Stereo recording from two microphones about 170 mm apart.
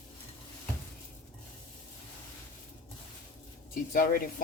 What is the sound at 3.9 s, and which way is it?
Speech, 60° left (ahead or behind).